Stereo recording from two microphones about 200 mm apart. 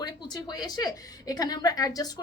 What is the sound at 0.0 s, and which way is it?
A woman's voice, 20° left (ahead or behind).